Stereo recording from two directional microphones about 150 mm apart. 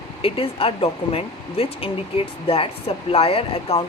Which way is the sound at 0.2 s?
40° left (ahead or behind).